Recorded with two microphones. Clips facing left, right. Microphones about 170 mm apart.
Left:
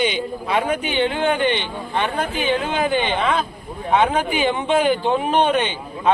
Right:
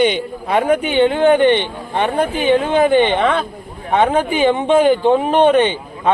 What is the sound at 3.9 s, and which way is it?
Speech, 50° right (ahead or behind).